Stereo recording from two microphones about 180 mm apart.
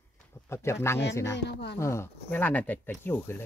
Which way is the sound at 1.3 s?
75° left (ahead or behind).